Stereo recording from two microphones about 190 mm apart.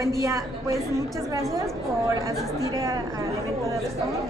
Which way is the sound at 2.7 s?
15° right (ahead or behind).